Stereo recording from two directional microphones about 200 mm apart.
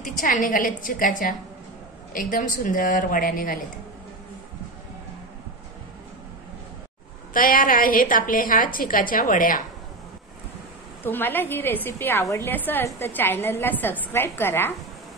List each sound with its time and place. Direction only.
0.0 s speech: 40° left (ahead or behind)
7.3 s speech: 45° left (ahead or behind)
11.1 s a woman's voice: 10° left (ahead or behind)